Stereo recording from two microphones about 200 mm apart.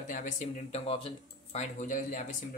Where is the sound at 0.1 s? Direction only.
40° left (ahead or behind).